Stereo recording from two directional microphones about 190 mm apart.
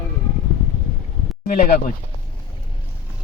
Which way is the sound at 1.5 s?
45° left (ahead or behind).